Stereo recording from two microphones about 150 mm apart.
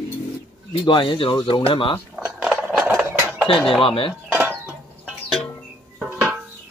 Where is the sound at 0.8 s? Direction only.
30° left (ahead or behind).